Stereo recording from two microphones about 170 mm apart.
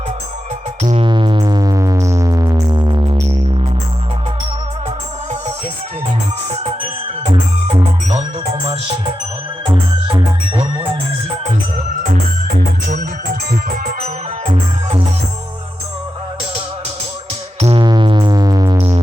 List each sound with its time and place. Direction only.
0.8 s music: 40° right (ahead or behind)
1.0 s sine wave: 30° right (ahead or behind)
8.4 s music: 35° right (ahead or behind)
13.5 s music: 60° right (ahead or behind)
14.0 s music: 35° right (ahead or behind)
17.6 s music: 35° right (ahead or behind)
17.8 s sine wave: 25° right (ahead or behind)